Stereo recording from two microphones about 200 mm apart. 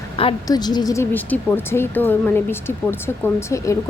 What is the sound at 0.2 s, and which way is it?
A woman's voice, 25° left (ahead or behind).